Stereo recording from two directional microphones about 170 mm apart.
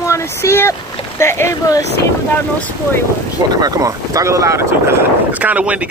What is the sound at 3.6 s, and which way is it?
Speech, 20° right (ahead or behind).